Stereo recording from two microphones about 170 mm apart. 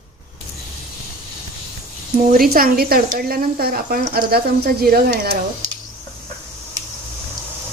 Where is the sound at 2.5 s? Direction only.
60° right (ahead or behind).